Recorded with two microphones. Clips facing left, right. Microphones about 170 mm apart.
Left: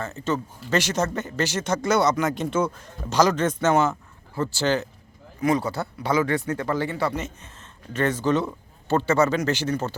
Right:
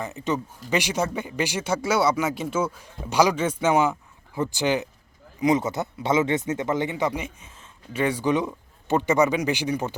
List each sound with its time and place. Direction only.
0.0 s speech: 15° right (ahead or behind)